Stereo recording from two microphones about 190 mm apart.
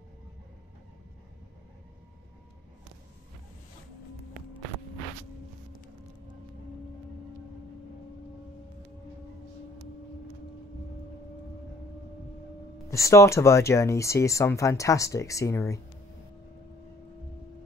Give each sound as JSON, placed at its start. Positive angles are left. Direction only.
{"t": 12.9, "sound": "speech", "side_deg": 15}